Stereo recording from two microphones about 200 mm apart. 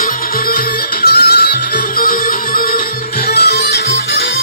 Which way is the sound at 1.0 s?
50° left (ahead or behind).